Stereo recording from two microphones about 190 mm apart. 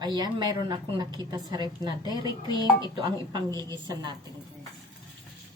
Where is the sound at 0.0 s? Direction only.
20° right (ahead or behind).